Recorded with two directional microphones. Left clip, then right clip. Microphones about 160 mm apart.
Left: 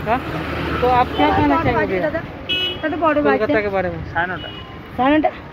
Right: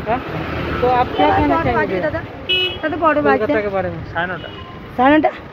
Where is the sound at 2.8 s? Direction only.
5° right (ahead or behind).